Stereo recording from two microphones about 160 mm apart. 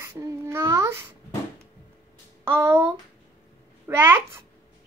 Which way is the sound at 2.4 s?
15° right (ahead or behind).